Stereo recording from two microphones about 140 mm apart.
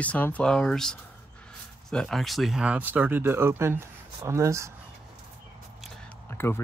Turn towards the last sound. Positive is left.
turn(degrees=15)  # may be behind; listen again after turning